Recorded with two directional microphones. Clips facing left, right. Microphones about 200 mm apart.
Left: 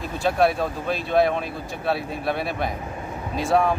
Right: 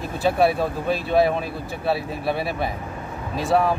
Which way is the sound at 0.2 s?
5° right (ahead or behind).